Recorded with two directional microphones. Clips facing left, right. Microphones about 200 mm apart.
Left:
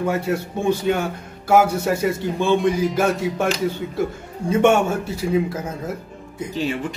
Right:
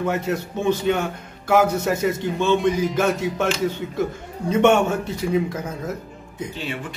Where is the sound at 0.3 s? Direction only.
10° left (ahead or behind).